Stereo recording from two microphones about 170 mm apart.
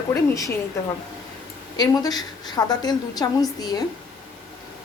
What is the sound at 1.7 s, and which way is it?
A woman's voice, 25° left (ahead or behind).